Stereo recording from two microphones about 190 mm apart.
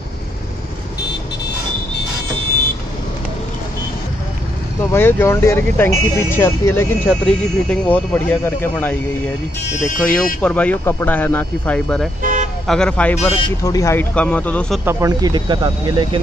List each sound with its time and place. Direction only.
4.9 s speech: 10° left (ahead or behind)
12.2 s vehicle: 40° right (ahead or behind)
12.6 s speech: 5° left (ahead or behind)
14.9 s speech: 15° right (ahead or behind)